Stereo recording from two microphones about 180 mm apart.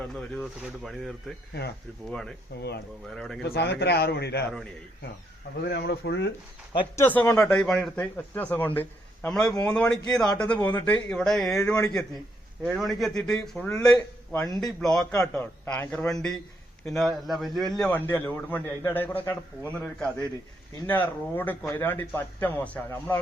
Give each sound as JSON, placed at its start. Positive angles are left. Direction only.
{"t": 0.0, "sound": "a man's voice", "side_deg": 5}
{"t": 2.6, "sound": "speech", "side_deg": 65}
{"t": 5.6, "sound": "speech", "side_deg": 65}
{"t": 6.9, "sound": "a man's voice", "side_deg": 10}
{"t": 12.6, "sound": "a man's voice", "side_deg": 0}
{"t": 15.2, "sound": "a man's voice", "side_deg": 15}